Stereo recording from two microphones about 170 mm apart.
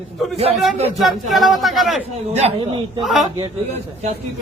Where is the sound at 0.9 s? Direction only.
Centre (ahead or behind).